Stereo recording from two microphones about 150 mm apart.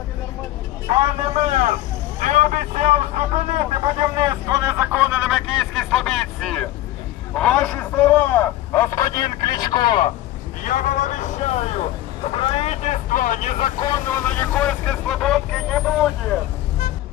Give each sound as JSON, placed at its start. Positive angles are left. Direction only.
{"t": 0.9, "sound": "speech", "side_deg": -45}
{"t": 2.1, "sound": "vehicle", "side_deg": -55}
{"t": 4.2, "sound": "vehicle", "side_deg": -25}
{"t": 4.9, "sound": "vehicle", "side_deg": -10}
{"t": 7.3, "sound": "a sound", "side_deg": 5}
{"t": 10.6, "sound": "vehicle", "side_deg": 60}
{"t": 12.3, "sound": "speech", "side_deg": 40}
{"t": 14.1, "sound": "vehicle", "side_deg": 10}